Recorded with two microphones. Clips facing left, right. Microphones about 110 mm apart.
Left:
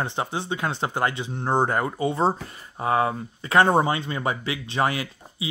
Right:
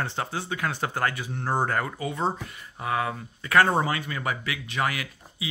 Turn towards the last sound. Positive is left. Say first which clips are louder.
# left 5 dB
turn(degrees=30)  # may be behind; listen again after turning